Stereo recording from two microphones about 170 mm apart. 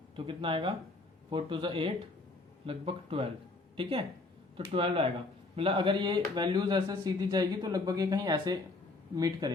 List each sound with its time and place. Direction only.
0.3 s speech: 30° right (ahead or behind)